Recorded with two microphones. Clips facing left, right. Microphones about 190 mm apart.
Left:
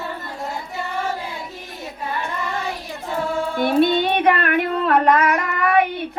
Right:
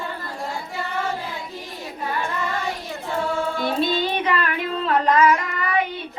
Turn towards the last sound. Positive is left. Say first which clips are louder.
# left 6 dB
turn(degrees=60)  # may be behind; listen again after turning